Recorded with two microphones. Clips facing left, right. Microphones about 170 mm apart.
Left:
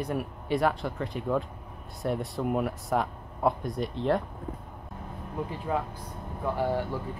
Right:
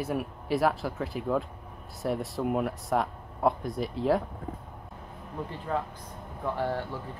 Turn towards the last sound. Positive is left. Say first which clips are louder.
# left 2 dB
turn(degrees=15)  # may be behind; listen again after turning